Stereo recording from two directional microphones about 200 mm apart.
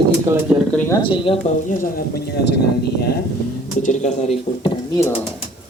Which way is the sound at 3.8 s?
35° left (ahead or behind).